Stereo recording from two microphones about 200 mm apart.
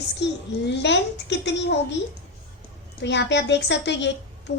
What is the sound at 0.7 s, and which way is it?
A woman's voice, 60° left (ahead or behind).